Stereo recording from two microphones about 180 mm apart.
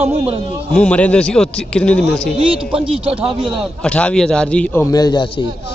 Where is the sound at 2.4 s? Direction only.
30° right (ahead or behind).